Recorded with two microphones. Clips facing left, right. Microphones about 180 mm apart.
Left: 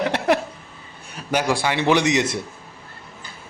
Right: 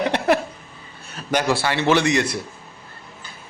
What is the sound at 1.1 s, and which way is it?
A man's voice, 10° left (ahead or behind).